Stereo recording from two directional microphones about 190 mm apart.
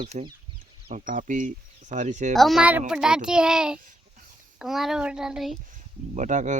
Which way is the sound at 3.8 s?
45° right (ahead or behind).